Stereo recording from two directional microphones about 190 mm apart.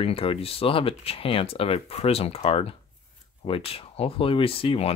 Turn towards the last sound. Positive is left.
turn(degrees=30)  # may be behind; listen again after turning